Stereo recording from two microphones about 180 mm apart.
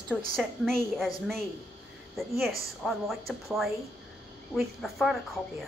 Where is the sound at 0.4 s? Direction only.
Centre (ahead or behind).